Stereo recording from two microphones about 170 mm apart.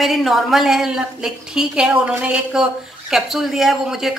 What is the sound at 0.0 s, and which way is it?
Speech, centre (ahead or behind).